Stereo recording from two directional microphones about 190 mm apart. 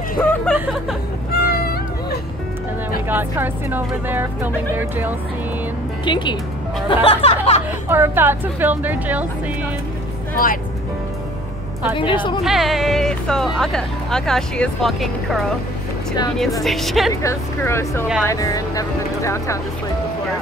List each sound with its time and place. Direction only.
0.2 s speech: 10° left (ahead or behind)
1.4 s a sound: 55° left (ahead or behind)
3.1 s a woman's voice: 10° right (ahead or behind)
6.0 s a woman's voice: 25° left (ahead or behind)
7.9 s a woman's voice: 10° right (ahead or behind)
10.3 s speech: 45° left (ahead or behind)
12.0 s a woman's voice: 25° left (ahead or behind)
12.4 s speech: centre (ahead or behind)
16.6 s speech: centre (ahead or behind)
17.1 s speech: 15° left (ahead or behind)